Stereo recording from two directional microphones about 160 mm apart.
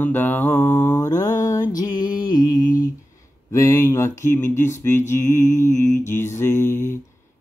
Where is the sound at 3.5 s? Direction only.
20° left (ahead or behind).